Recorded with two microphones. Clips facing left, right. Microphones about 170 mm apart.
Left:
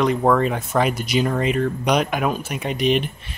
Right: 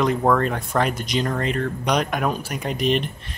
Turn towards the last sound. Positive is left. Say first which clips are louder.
# left 2 dB
turn(degrees=0)  # may be behind; listen again after turning